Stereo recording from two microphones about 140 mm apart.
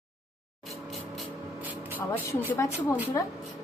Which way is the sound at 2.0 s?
10° left (ahead or behind).